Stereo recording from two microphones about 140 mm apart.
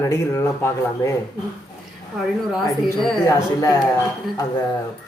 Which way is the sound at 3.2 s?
25° left (ahead or behind).